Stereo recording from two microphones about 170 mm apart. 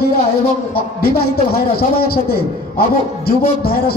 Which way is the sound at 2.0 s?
60° left (ahead or behind).